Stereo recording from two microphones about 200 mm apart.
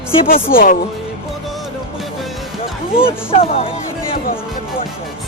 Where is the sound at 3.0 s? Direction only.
30° left (ahead or behind).